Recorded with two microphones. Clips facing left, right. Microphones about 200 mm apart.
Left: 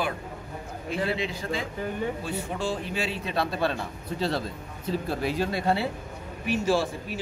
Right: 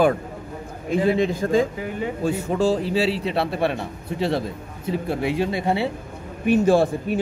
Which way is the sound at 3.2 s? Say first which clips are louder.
Right 5 dB; 25° right (ahead or behind).